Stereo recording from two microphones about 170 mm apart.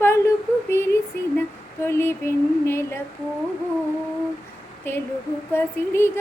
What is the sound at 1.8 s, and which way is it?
Female singing, 15° left (ahead or behind).